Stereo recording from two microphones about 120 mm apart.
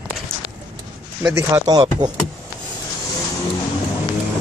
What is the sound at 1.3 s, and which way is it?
Speech, 30° right (ahead or behind).